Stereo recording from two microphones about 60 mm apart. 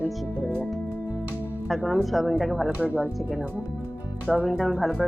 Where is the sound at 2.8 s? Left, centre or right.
Right.